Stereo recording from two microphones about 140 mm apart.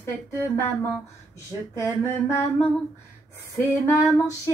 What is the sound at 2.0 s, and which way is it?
A woman's voice, 20° left (ahead or behind).